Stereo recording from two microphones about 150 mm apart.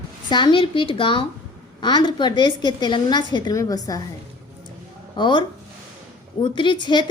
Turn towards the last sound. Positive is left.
turn(degrees=30)  # may be behind; listen again after turning